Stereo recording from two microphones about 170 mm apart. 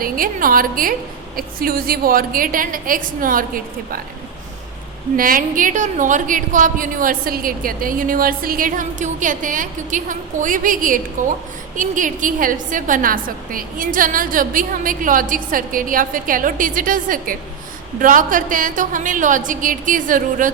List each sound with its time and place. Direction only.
0.0 s a woman's voice: 55° right (ahead or behind)
5.1 s a woman's voice: 55° right (ahead or behind)